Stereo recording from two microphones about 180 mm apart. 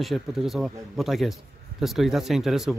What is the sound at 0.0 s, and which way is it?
Speech, centre (ahead or behind).